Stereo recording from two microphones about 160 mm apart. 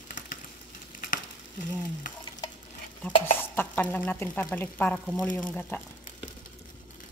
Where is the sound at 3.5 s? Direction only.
10° left (ahead or behind).